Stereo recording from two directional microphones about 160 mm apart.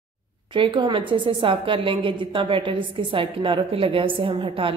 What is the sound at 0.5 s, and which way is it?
A woman's voice, 30° right (ahead or behind).